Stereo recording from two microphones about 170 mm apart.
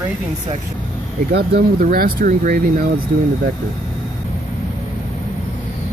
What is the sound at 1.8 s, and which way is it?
Speech, 55° right (ahead or behind).